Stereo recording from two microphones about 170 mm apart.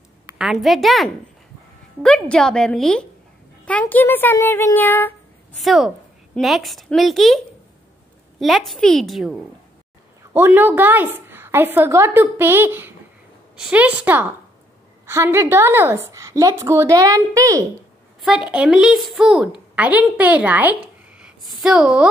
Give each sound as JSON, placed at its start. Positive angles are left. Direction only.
{"t": 0.3, "sound": "a woman's voice", "side_deg": -5}
{"t": 5.6, "sound": "a woman's voice", "side_deg": 0}
{"t": 10.3, "sound": "a woman's voice", "side_deg": -10}
{"t": 18.2, "sound": "a woman's voice", "side_deg": -5}